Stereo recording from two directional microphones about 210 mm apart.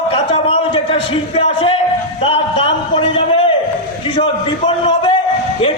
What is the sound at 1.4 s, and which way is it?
A man's voice, 25° left (ahead or behind).